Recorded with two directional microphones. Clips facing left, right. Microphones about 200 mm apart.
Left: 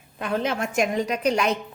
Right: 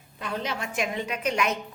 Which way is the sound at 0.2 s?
55° left (ahead or behind).